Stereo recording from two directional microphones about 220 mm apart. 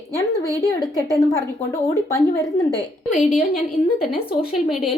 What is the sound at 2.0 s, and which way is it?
Speech, 15° left (ahead or behind).